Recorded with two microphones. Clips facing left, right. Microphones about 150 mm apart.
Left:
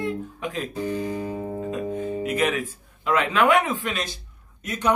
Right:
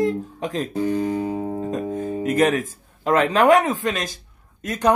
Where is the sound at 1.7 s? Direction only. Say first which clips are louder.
Right 2 dB; 45° right (ahead or behind).